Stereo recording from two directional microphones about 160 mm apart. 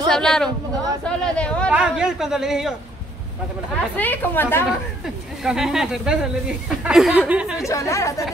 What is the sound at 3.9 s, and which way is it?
Speech, 10° left (ahead or behind).